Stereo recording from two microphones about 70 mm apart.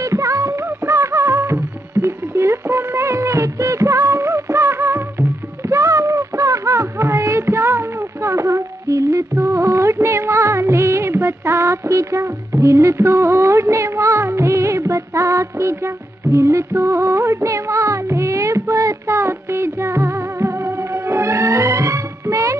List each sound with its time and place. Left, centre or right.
0.0 s music: right
5.7 s child singing: right
9.4 s music of bollywood: right